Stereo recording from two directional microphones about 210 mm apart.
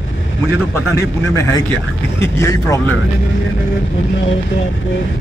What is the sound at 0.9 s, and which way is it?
A man's voice, 15° left (ahead or behind).